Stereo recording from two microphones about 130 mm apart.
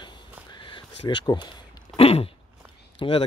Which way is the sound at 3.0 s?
45° left (ahead or behind).